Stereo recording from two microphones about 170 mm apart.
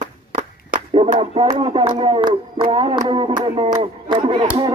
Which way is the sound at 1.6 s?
30° right (ahead or behind).